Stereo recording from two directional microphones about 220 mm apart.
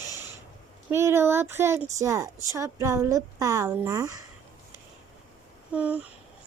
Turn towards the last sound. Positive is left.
turn(degrees=-5)  # may be behind; listen again after turning